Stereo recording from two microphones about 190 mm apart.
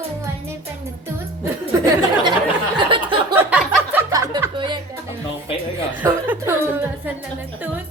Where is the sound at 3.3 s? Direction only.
10° right (ahead or behind).